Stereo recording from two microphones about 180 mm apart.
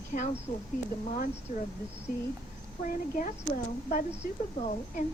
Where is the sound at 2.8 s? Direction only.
45° left (ahead or behind).